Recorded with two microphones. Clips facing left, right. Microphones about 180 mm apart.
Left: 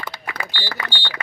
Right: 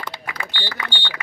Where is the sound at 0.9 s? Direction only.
15° right (ahead or behind).